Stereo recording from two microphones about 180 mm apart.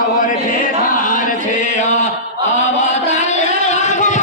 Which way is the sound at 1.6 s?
40° left (ahead or behind).